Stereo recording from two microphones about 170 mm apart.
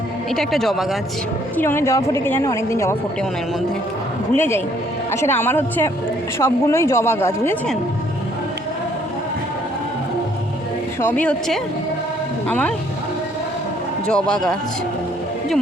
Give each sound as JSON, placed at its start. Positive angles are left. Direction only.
{"t": 0.3, "sound": "speech", "side_deg": 0}
{"t": 1.5, "sound": "a woman's voice", "side_deg": 15}
{"t": 4.4, "sound": "a woman's voice", "side_deg": 15}
{"t": 11.0, "sound": "a woman's voice", "side_deg": 10}
{"t": 14.1, "sound": "speech", "side_deg": 5}